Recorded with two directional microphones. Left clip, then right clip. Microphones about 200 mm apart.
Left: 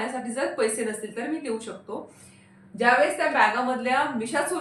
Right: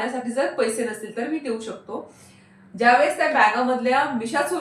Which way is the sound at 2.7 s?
15° left (ahead or behind).